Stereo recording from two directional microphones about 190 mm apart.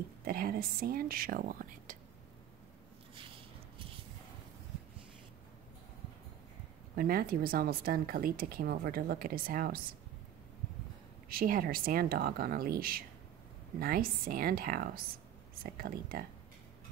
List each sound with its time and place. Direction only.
0.2 s speech: 50° right (ahead or behind)
3.2 s a sound: 25° right (ahead or behind)
7.0 s speech: 50° right (ahead or behind)
11.2 s speech: 50° right (ahead or behind)